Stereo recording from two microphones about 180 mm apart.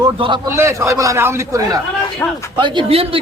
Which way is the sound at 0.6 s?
15° right (ahead or behind).